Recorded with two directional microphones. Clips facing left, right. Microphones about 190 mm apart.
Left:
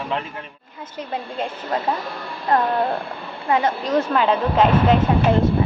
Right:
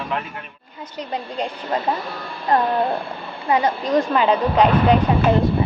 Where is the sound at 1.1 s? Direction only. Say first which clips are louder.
Right 1 dB; 5° left (ahead or behind).